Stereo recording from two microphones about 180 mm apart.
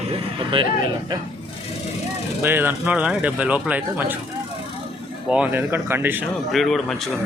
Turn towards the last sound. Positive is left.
turn(degrees=0)  # may be behind; listen again after turning